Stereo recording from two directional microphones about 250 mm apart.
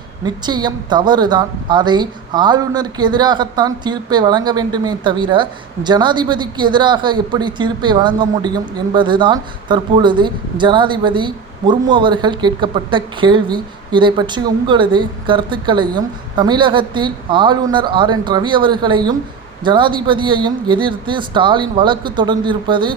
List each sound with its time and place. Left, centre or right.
0.3 s a woman's voice: centre